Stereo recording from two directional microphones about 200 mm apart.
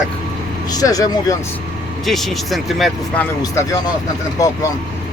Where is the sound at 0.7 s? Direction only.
20° left (ahead or behind).